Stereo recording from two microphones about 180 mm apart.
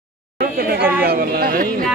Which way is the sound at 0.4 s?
55° right (ahead or behind).